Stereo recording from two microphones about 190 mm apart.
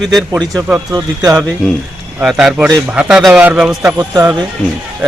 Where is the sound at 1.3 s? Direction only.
Centre (ahead or behind).